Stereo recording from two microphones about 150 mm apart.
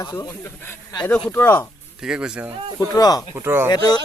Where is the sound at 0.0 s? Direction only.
25° left (ahead or behind).